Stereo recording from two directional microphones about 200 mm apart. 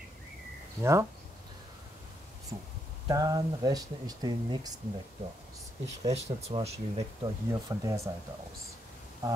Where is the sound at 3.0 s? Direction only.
20° right (ahead or behind).